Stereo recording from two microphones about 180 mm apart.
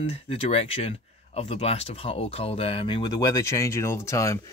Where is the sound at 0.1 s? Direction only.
35° left (ahead or behind).